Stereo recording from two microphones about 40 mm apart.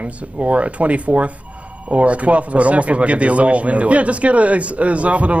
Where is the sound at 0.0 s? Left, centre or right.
Right.